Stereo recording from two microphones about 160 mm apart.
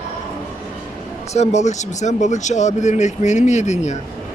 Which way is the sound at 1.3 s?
45° left (ahead or behind).